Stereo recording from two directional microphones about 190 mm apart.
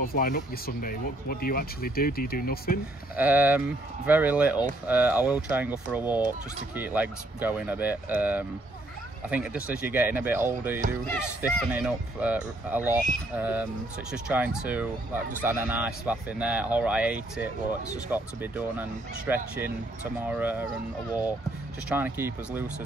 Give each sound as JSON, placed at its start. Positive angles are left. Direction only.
{"t": 0.0, "sound": "speech", "side_deg": 50}
{"t": 3.2, "sound": "speech", "side_deg": -10}